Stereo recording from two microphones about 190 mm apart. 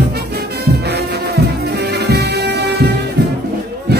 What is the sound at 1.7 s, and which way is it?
Music, 60° right (ahead or behind).